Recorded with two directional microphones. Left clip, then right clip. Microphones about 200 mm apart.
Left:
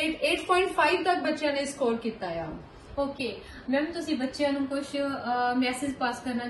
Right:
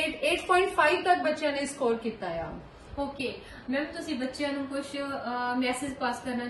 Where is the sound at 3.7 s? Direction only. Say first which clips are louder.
Left 4 dB; centre (ahead or behind).